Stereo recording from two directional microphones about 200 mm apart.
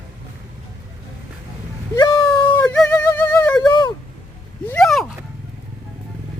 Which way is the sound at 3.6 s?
20° left (ahead or behind).